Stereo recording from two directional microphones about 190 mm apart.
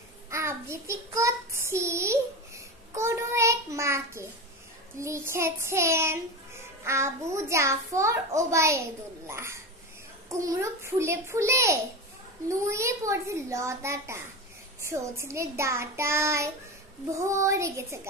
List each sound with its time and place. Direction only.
0.3 s child singing: 15° right (ahead or behind)
4.9 s a child's voice: 15° right (ahead or behind)